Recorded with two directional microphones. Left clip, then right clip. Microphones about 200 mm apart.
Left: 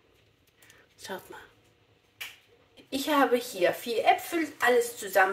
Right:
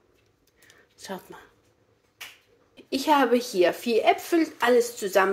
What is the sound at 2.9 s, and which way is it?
A woman's voice, 40° right (ahead or behind).